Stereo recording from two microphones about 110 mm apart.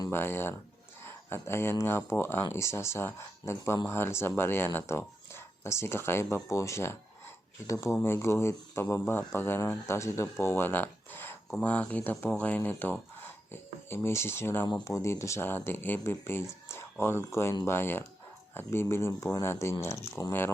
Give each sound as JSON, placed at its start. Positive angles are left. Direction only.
{"t": 0.1, "sound": "speech", "side_deg": 20}